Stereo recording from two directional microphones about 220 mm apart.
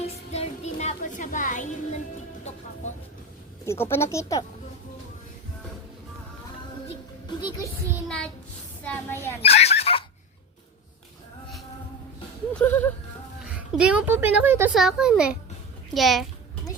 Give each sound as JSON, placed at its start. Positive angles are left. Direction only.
{"t": 0.3, "sound": "music", "side_deg": 30}
{"t": 3.7, "sound": "speech", "side_deg": 10}
{"t": 8.0, "sound": "a woman's voice", "side_deg": 5}
{"t": 9.4, "sound": "dog", "side_deg": 30}
{"t": 12.5, "sound": "speech", "side_deg": 10}
{"t": 13.4, "sound": "speech", "side_deg": -5}